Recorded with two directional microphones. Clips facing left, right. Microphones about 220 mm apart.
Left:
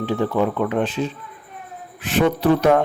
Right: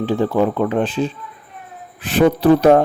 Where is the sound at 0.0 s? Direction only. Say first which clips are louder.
Right 3 dB; 30° right (ahead or behind).